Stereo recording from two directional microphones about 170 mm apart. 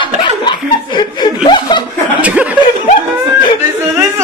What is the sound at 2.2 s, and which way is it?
Chuckle, 10° right (ahead or behind).